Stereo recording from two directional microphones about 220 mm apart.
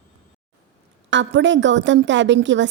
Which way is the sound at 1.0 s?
55° right (ahead or behind).